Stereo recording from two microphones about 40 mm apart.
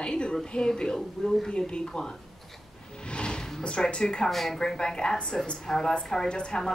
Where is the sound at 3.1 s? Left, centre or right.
Left.